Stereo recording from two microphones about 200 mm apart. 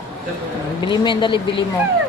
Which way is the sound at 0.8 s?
25° left (ahead or behind).